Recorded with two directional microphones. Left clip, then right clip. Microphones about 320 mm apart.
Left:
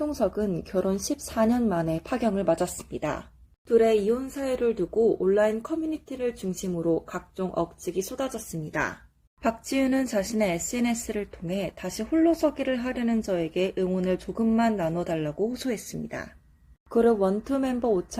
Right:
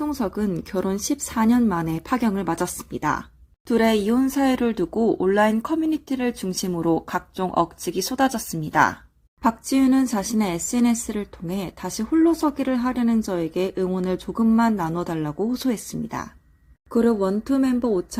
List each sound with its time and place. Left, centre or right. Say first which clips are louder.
0.1 s speech: even; right
3.7 s speech: right 1 dB; right